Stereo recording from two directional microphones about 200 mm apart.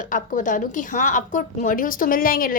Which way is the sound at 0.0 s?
40° left (ahead or behind).